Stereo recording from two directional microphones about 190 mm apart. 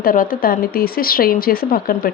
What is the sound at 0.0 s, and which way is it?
Speech, 50° left (ahead or behind).